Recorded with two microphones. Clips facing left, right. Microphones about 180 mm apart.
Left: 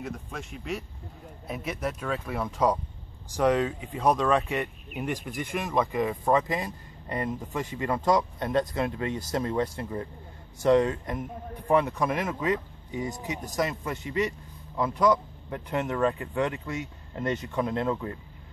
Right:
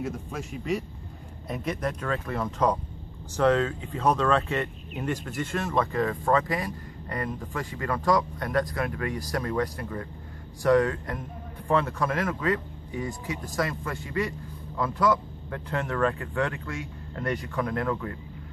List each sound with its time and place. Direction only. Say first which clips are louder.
0.0 s speech: right 4 dB; centre (ahead or behind); by 18.1 s 20° left (ahead or behind)